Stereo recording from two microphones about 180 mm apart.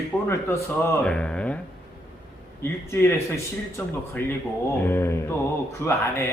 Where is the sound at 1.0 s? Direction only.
5° left (ahead or behind).